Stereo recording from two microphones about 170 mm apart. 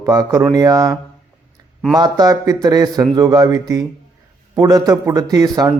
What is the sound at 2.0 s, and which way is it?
A man's voice, 20° right (ahead or behind).